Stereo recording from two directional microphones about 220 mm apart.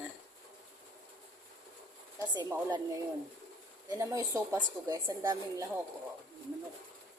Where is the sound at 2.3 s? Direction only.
20° right (ahead or behind).